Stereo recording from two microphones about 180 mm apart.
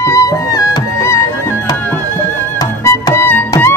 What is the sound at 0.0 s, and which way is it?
Music, 20° left (ahead or behind).